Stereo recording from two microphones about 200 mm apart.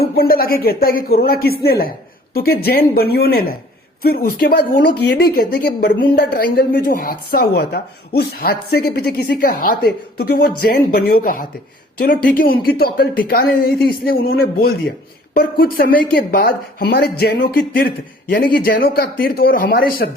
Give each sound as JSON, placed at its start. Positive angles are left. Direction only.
{"t": 0.0, "sound": "speech", "side_deg": 50}